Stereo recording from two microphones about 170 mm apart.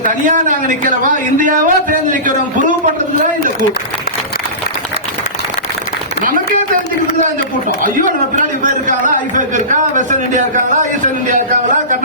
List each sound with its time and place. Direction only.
1.4 s a man's voice: 50° right (ahead or behind)
8.6 s a man's voice: 50° right (ahead or behind)